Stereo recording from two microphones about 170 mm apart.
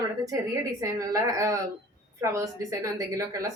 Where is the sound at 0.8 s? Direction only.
20° right (ahead or behind).